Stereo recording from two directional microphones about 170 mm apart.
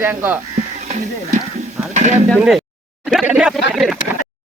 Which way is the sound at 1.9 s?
45° right (ahead or behind).